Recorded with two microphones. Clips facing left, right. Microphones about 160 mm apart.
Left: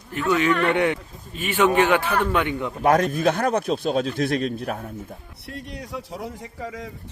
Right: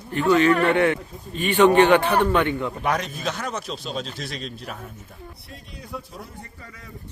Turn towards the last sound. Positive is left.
turn(degrees=90)